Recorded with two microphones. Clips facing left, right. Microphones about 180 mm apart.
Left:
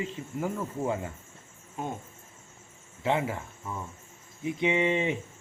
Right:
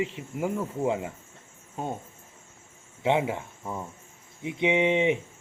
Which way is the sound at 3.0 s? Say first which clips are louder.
Right 3 dB; 20° right (ahead or behind).